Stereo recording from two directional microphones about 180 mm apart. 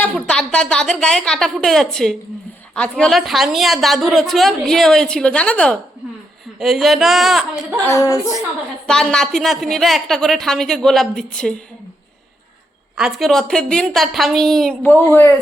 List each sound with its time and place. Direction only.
0.3 s a woman's voice: 5° left (ahead or behind)
7.8 s a woman's voice: 15° left (ahead or behind)
8.9 s a woman's voice: 5° left (ahead or behind)
13.0 s a woman's voice: centre (ahead or behind)